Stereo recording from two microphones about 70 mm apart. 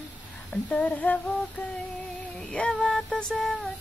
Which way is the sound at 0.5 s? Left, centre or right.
Centre.